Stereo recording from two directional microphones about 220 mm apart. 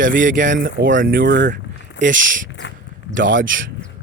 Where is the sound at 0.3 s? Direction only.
35° right (ahead or behind).